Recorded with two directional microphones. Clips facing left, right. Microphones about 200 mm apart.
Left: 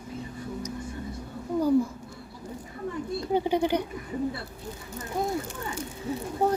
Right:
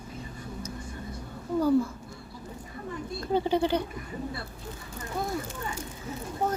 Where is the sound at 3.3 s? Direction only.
15° left (ahead or behind).